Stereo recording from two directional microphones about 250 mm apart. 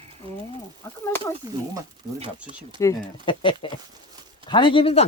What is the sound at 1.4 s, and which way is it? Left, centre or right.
Speech, centre.